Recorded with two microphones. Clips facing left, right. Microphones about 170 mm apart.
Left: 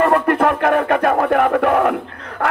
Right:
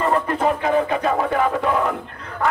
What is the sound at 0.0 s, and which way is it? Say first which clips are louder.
Music: left 5 dB; 65° left (ahead or behind).